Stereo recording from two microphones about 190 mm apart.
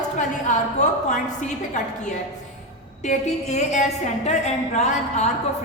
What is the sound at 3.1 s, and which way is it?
A woman's voice, 40° left (ahead or behind).